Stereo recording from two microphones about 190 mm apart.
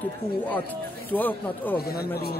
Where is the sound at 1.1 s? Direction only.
10° left (ahead or behind).